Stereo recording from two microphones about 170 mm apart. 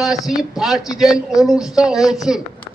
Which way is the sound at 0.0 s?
Centre (ahead or behind).